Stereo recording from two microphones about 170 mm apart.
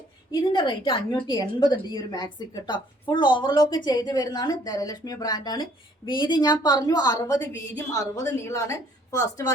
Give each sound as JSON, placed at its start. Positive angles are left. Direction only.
{"t": 0.3, "sound": "a woman's voice", "side_deg": 25}